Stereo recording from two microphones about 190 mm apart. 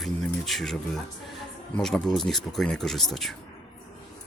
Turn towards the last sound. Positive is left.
turn(degrees=0)  # may be behind; listen again after turning